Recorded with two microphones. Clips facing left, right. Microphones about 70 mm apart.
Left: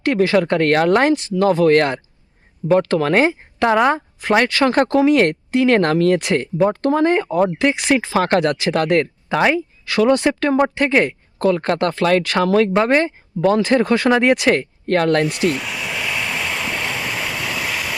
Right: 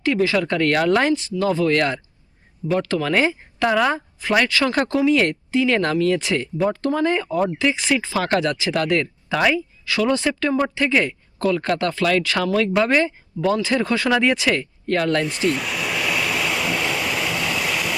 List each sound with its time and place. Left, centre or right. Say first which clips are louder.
0.0 s a sound: left 3 dB; left
0.4 s speech: left 3 dB; left
1.1 s speech: left 4 dB; left
4.4 s speech: left 4 dB; left
8.1 s speech: left 4 dB; left
15.4 s vehicle: left 1 dB; centre